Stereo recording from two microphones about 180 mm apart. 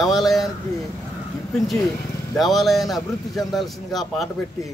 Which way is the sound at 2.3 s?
Centre (ahead or behind).